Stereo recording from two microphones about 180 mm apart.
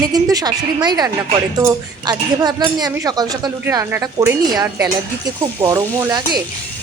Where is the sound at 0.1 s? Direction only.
20° right (ahead or behind).